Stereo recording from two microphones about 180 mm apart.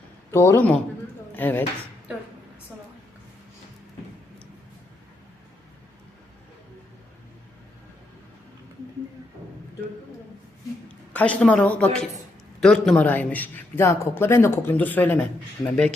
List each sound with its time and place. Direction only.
0.3 s a man's voice: 15° left (ahead or behind)
11.1 s a man's voice: 10° left (ahead or behind)